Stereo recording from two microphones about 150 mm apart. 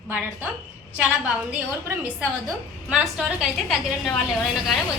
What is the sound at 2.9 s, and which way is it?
A woman's voice, 5° right (ahead or behind).